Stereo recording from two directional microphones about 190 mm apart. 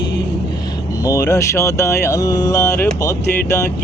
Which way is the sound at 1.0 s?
15° left (ahead or behind).